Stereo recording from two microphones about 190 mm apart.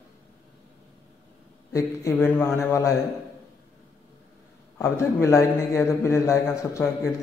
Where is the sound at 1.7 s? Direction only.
15° left (ahead or behind).